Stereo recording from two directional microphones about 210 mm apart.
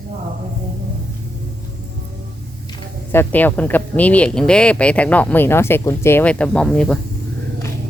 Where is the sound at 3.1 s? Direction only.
10° left (ahead or behind).